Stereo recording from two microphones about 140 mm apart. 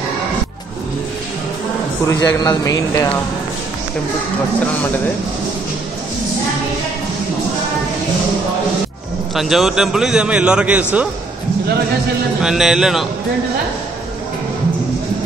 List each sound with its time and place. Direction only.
2.0 s speech: 25° left (ahead or behind)
9.3 s a man's voice: centre (ahead or behind)
12.4 s a man's voice: 5° right (ahead or behind)